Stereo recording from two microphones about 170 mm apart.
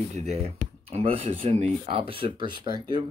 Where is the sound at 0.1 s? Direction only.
40° right (ahead or behind).